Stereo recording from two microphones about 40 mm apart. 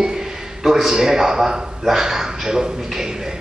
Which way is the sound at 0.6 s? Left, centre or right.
Centre.